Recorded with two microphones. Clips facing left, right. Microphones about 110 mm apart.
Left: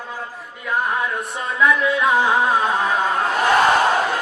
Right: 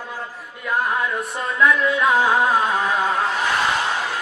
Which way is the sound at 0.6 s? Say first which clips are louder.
Even; centre (ahead or behind).